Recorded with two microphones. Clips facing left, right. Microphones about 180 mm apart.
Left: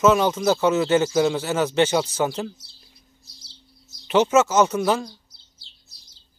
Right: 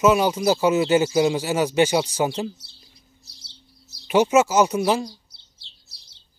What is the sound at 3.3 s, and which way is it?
Bird, 65° right (ahead or behind).